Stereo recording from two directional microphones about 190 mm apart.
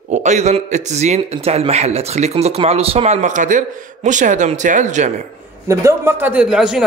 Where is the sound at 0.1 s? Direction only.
40° right (ahead or behind).